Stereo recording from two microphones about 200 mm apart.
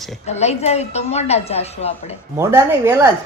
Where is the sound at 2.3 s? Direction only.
15° right (ahead or behind).